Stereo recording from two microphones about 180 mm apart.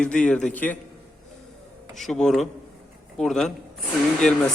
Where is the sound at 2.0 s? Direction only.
Centre (ahead or behind).